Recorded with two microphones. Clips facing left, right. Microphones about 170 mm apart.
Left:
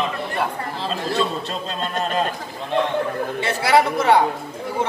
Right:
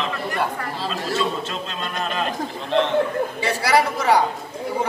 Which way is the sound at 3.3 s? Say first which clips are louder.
Left 3 dB; centre (ahead or behind).